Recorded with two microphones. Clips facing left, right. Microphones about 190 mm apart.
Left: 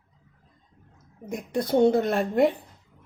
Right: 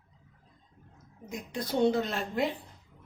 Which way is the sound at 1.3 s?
60° left (ahead or behind).